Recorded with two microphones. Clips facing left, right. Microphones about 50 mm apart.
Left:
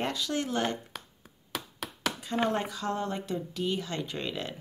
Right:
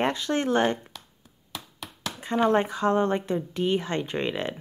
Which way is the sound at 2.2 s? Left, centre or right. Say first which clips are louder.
Right 8 dB; right.